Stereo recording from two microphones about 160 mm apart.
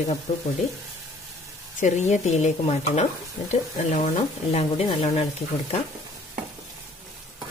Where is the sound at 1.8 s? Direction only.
45° left (ahead or behind).